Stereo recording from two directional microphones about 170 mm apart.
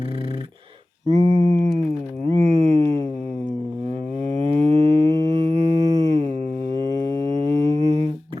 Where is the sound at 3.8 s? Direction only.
30° right (ahead or behind).